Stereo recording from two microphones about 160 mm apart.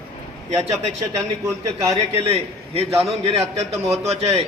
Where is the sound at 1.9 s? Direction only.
40° right (ahead or behind).